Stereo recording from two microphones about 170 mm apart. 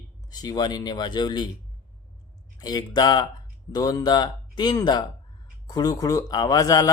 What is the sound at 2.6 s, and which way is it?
Speech, 25° left (ahead or behind).